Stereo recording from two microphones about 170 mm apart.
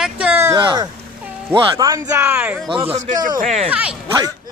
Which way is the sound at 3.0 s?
50° right (ahead or behind).